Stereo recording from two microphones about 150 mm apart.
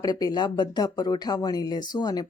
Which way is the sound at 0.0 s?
25° left (ahead or behind).